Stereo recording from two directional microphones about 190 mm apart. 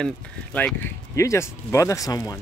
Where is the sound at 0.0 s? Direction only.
5° left (ahead or behind).